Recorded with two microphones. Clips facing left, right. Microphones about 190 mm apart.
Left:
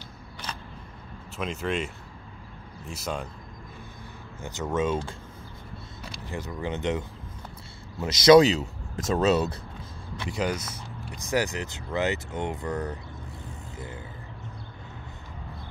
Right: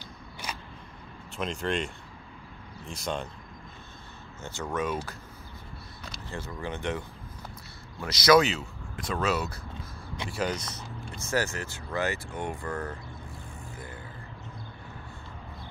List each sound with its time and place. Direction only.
1.3 s speech: 5° left (ahead or behind)
2.9 s speech: 5° left (ahead or behind)
4.4 s speech: 15° left (ahead or behind)
6.2 s speech: 15° left (ahead or behind)
8.4 s speech: 35° left (ahead or behind)
9.2 s speech: 25° left (ahead or behind)
10.3 s speech: 10° left (ahead or behind)